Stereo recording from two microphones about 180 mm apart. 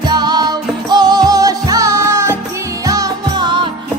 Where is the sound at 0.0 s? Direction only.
25° right (ahead or behind).